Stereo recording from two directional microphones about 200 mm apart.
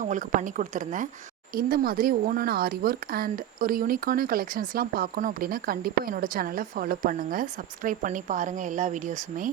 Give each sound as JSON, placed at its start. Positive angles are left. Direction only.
{"t": 0.0, "sound": "speech", "side_deg": -40}